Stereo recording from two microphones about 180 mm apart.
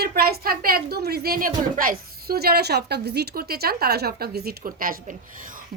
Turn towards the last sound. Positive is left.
turn(degrees=-50)  # may be behind; listen again after turning